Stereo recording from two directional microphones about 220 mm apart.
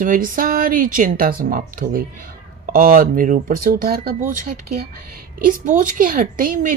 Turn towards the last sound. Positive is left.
turn(degrees=-40)  # may be behind; listen again after turning